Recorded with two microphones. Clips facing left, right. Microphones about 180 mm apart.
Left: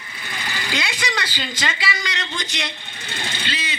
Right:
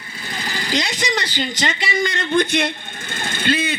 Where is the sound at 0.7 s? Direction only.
40° right (ahead or behind).